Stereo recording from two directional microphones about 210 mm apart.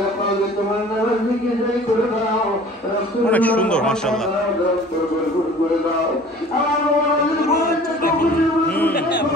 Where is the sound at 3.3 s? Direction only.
5° left (ahead or behind).